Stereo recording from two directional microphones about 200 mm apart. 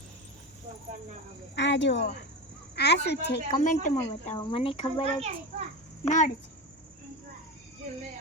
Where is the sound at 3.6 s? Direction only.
40° left (ahead or behind).